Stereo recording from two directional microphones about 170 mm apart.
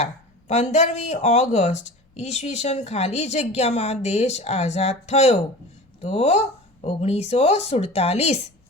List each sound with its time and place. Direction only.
0.0 s speech: 40° left (ahead or behind)